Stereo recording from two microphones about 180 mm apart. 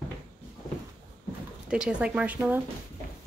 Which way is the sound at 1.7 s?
5° right (ahead or behind).